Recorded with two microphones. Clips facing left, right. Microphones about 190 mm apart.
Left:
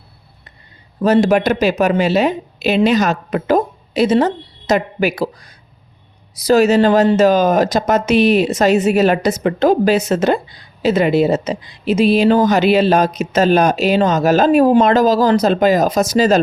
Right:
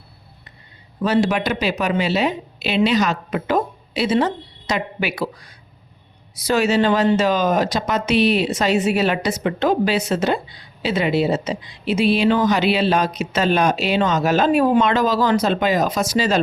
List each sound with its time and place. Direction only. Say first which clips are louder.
1.0 s speech: left 6 dB; 45° left (ahead or behind)